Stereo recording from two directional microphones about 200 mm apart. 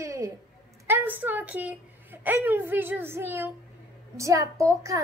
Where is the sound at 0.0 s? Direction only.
15° right (ahead or behind).